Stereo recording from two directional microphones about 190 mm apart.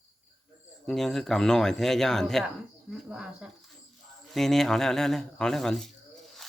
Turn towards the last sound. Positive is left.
turn(degrees=0)  # may be behind; listen again after turning